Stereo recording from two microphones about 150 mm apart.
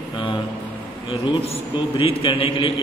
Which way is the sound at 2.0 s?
40° left (ahead or behind).